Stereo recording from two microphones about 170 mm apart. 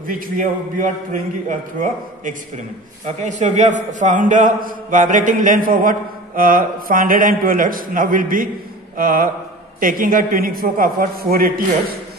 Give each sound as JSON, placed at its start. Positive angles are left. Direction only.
{"t": 0.0, "sound": "a man's voice", "side_deg": -50}